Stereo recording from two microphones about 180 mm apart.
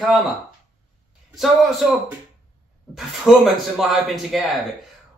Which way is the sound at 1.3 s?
Centre (ahead or behind).